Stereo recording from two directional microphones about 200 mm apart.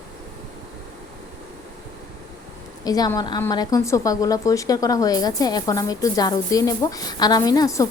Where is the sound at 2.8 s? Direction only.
20° left (ahead or behind).